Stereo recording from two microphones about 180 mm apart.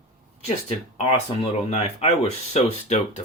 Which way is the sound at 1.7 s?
35° left (ahead or behind).